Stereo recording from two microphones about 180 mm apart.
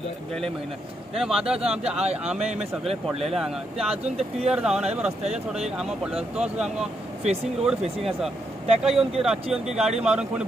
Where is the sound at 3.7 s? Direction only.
35° right (ahead or behind).